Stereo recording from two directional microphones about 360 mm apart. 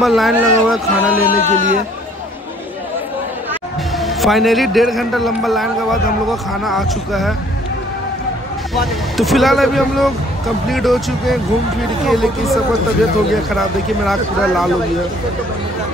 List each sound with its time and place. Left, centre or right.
0.0 s a man's voice: centre
1.5 s speech: centre
4.0 s a man's voice: centre
8.7 s a man's voice: centre